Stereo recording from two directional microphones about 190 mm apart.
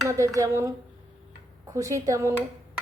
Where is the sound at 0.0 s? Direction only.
15° right (ahead or behind).